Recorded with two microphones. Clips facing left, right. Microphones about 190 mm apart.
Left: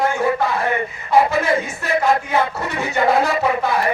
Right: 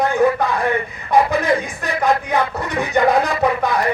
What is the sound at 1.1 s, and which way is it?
Music, 15° right (ahead or behind).